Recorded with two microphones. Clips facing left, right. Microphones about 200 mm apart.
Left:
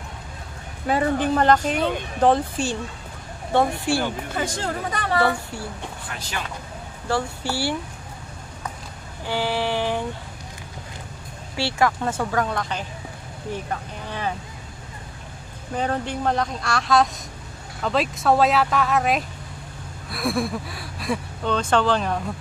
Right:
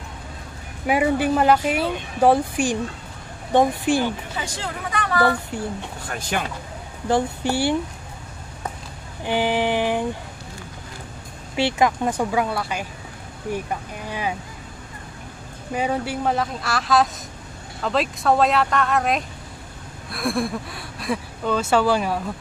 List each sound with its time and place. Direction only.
0.8 s speech: 10° right (ahead or behind)
4.0 s speech: 50° left (ahead or behind)
5.5 s speech: 20° right (ahead or behind)
6.0 s speech: 50° right (ahead or behind)
7.1 s speech: 20° right (ahead or behind)
9.2 s a sound: 15° right (ahead or behind)
11.5 s speech: 20° right (ahead or behind)
15.7 s speech: 10° right (ahead or behind)